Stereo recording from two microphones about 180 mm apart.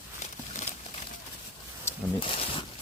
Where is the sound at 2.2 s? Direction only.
30° left (ahead or behind).